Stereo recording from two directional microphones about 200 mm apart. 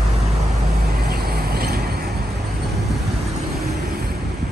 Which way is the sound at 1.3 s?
50° right (ahead or behind).